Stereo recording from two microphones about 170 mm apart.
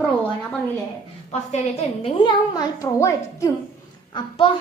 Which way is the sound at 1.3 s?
40° left (ahead or behind).